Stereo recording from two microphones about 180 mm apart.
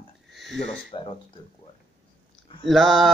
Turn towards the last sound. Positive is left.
turn(degrees=0)  # may be behind; listen again after turning